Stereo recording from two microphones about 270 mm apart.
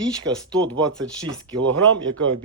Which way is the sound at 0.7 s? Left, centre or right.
Centre.